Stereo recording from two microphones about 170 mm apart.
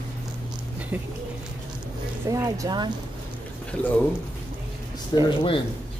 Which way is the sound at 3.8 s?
10° left (ahead or behind).